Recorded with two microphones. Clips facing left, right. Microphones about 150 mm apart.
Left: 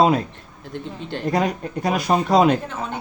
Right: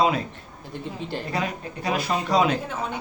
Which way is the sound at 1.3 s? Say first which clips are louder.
Left 9 dB; 45° left (ahead or behind).